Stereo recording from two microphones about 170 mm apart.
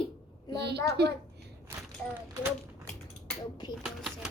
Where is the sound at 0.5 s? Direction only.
75° right (ahead or behind).